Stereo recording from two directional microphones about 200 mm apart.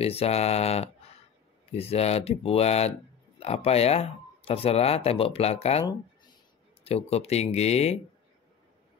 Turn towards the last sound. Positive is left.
turn(degrees=30)  # may be behind; listen again after turning